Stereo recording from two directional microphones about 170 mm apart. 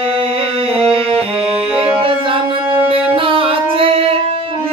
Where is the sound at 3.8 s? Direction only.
35° right (ahead or behind).